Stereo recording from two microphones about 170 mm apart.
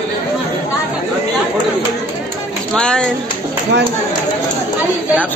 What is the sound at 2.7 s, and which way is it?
Speech, 5° left (ahead or behind).